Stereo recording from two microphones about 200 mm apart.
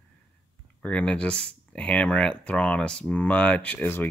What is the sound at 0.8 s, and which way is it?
Speech, 5° left (ahead or behind).